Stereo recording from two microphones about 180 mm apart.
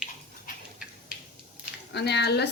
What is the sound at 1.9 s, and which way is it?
Speech, 65° left (ahead or behind).